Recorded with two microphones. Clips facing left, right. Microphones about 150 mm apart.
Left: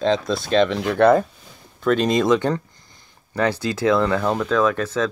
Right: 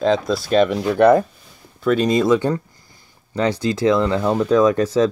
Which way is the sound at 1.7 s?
5° right (ahead or behind).